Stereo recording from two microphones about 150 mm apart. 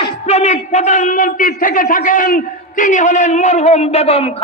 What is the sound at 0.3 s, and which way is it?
A man's voice, 50° left (ahead or behind).